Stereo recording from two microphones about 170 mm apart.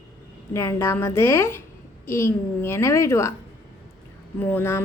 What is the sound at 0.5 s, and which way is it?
A woman's voice, 15° left (ahead or behind).